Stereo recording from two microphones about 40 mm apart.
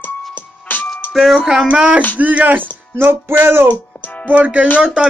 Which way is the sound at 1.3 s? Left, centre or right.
Centre.